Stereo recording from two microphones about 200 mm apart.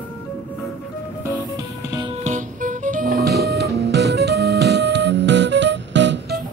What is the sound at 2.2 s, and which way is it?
Music, 40° right (ahead or behind).